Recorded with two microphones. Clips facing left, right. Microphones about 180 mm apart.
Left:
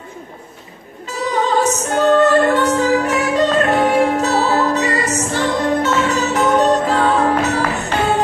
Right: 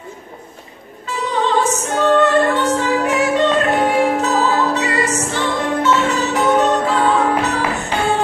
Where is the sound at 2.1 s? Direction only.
40° left (ahead or behind).